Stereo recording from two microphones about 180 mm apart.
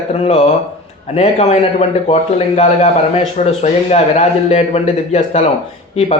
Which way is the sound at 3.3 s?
40° left (ahead or behind).